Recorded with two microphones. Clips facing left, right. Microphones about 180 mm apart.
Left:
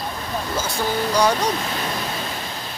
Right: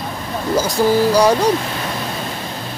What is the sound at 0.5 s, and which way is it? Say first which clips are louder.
Speech: right 10 dB; 35° right (ahead or behind).